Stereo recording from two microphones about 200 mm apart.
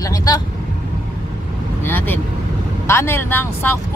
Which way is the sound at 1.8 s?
10° left (ahead or behind).